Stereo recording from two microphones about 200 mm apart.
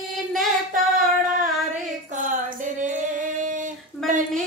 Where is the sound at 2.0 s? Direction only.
40° right (ahead or behind).